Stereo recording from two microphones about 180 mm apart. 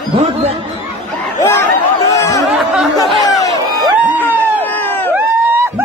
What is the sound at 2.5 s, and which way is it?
Music, centre (ahead or behind).